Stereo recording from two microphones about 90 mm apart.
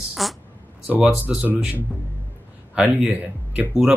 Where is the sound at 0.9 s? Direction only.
15° right (ahead or behind).